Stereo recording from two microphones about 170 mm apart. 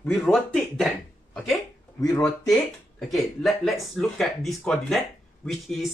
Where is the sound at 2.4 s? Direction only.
Centre (ahead or behind).